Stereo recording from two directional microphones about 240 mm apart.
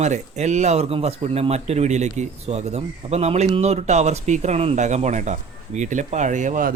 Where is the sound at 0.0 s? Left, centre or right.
Right.